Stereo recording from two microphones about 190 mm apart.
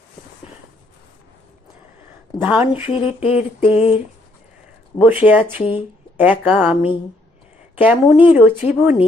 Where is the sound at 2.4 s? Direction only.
10° right (ahead or behind).